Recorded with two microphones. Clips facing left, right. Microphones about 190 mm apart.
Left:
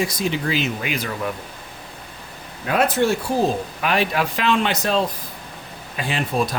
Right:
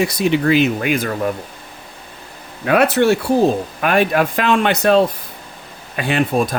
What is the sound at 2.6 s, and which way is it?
Speech, 65° right (ahead or behind).